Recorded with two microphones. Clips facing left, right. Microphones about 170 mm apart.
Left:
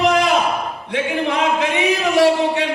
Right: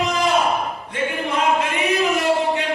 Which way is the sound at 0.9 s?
90° left.